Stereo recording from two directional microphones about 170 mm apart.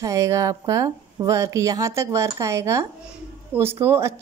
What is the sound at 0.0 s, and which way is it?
A woman's voice, 20° right (ahead or behind).